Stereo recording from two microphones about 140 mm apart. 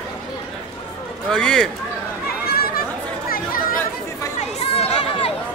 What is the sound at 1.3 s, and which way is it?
Speech, 5° left (ahead or behind).